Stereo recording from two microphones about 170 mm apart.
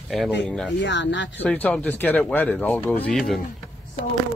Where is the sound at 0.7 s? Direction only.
90° left.